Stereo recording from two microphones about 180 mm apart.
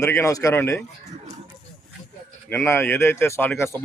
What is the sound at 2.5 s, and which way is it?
Speech, 15° left (ahead or behind).